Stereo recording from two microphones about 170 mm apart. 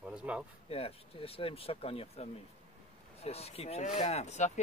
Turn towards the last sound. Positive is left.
turn(degrees=40)  # may be behind; listen again after turning